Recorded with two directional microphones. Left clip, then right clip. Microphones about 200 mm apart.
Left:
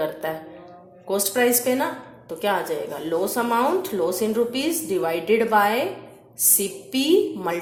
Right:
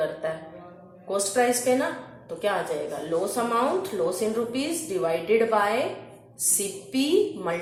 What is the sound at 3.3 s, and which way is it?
Speech, 45° left (ahead or behind).